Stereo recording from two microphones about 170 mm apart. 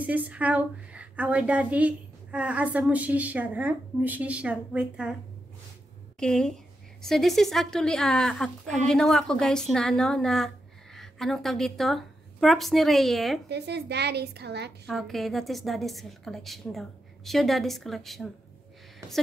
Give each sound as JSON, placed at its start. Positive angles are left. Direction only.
{"t": 0.0, "sound": "a woman's voice", "side_deg": -10}
{"t": 6.1, "sound": "a woman's voice", "side_deg": 5}
{"t": 13.5, "sound": "a woman's voice", "side_deg": -80}
{"t": 14.9, "sound": "a woman's voice", "side_deg": 0}